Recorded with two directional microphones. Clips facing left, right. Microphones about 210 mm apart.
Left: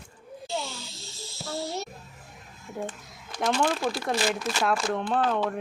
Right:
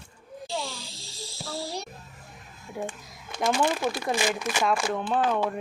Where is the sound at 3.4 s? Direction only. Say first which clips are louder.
Right 1 dB; 10° right (ahead or behind).